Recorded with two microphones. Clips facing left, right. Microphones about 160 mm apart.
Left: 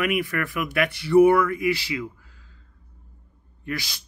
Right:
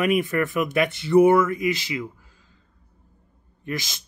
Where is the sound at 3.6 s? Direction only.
20° right (ahead or behind).